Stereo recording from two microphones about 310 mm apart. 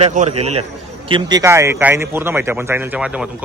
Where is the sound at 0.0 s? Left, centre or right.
Right.